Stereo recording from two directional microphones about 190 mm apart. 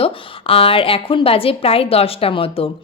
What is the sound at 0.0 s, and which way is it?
A woman's voice, 30° left (ahead or behind).